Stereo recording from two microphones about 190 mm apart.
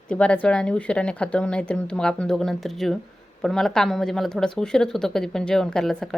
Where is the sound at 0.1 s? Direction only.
5° left (ahead or behind).